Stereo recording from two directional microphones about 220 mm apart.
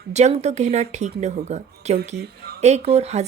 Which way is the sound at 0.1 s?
30° right (ahead or behind).